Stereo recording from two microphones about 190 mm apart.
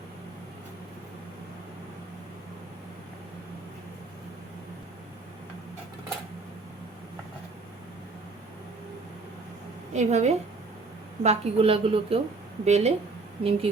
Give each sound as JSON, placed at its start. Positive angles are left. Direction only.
{"t": 9.9, "sound": "a woman's voice", "side_deg": -35}